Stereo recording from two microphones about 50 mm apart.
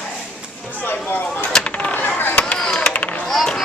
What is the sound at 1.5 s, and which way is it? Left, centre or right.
Speech, left.